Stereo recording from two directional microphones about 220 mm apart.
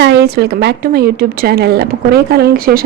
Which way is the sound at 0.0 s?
50° right (ahead or behind).